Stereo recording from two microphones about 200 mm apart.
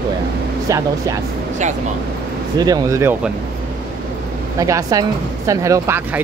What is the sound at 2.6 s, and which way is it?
Speech, 20° right (ahead or behind).